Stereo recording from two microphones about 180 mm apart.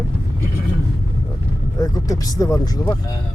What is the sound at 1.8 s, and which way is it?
Speech, 20° left (ahead or behind).